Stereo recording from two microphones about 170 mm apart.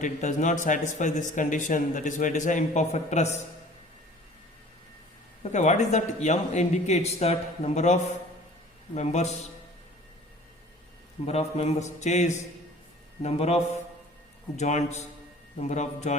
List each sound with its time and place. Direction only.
0.0 s a man's voice: 45° left (ahead or behind)
5.4 s a man's voice: 45° left (ahead or behind)
11.3 s a man's voice: 40° left (ahead or behind)